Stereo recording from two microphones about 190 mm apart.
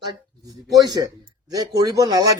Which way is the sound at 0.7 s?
20° right (ahead or behind).